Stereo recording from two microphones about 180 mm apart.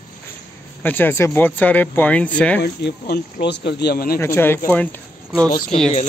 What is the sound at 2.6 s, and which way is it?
Speech, 65° left (ahead or behind).